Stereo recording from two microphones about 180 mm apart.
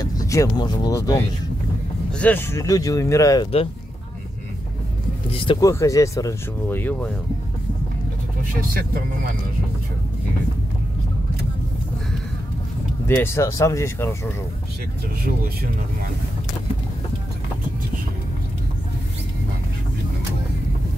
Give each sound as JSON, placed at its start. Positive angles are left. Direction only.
{"t": 0.0, "sound": "speech", "side_deg": 20}
{"t": 2.1, "sound": "speech", "side_deg": 10}
{"t": 5.3, "sound": "speech", "side_deg": 30}
{"t": 5.7, "sound": "speech", "side_deg": 15}
{"t": 13.0, "sound": "speech", "side_deg": 15}